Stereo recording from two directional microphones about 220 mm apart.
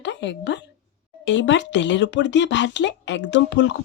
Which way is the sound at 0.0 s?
55° left (ahead or behind).